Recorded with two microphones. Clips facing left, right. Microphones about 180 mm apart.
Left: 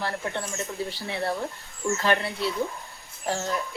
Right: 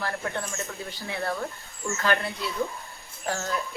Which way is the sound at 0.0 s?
25° left (ahead or behind).